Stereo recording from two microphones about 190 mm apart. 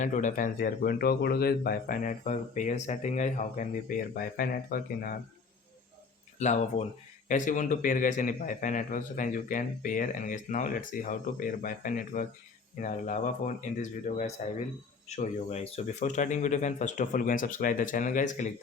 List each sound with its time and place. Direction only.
0.0 s speech: 40° left (ahead or behind)
6.4 s speech: 40° left (ahead or behind)